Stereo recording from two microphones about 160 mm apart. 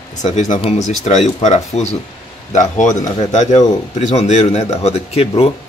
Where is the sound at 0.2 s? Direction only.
45° left (ahead or behind).